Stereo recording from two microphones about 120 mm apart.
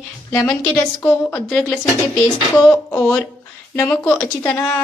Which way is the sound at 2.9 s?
20° left (ahead or behind).